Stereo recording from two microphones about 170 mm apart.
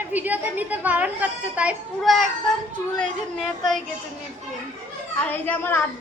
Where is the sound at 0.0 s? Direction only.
10° right (ahead or behind).